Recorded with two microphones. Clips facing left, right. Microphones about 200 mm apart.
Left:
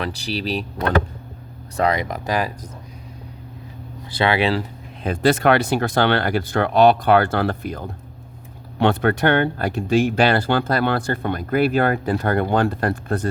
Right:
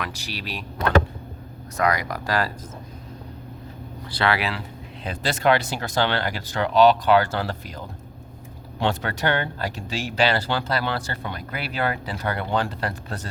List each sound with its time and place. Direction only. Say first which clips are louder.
0.0 s speech: left 7 dB; 35° left (ahead or behind)
1.7 s speech: left 3 dB; 30° left (ahead or behind)
4.2 s speech: left 5 dB; 25° left (ahead or behind)
5.0 s speech: left 5 dB; 55° left (ahead or behind)